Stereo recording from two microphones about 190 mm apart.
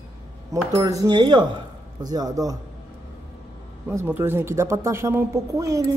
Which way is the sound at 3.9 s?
10° right (ahead or behind).